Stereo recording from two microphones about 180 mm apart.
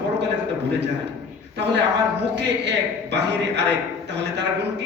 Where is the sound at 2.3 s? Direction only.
70° right (ahead or behind).